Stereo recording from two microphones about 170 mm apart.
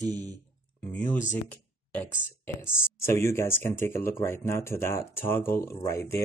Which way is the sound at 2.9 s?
15° left (ahead or behind).